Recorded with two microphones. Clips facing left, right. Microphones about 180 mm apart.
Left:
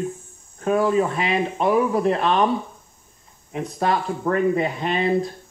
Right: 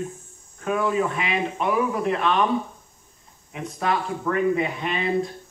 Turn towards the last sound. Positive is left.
turn(degrees=35)  # may be behind; listen again after turning